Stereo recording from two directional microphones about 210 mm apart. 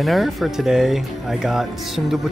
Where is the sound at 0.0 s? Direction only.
Centre (ahead or behind).